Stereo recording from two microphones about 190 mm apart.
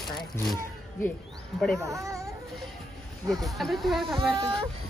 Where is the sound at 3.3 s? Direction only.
Centre (ahead or behind).